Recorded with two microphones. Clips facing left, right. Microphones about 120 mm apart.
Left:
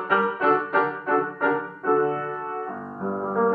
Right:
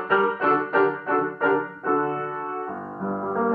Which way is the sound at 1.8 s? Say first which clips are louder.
Left 2 dB; 30° right (ahead or behind).